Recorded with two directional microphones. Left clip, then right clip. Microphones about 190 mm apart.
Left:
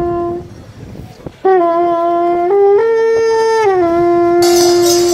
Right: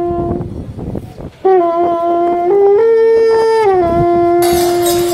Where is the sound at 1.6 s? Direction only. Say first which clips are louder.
Left 1 dB; 35° right (ahead or behind).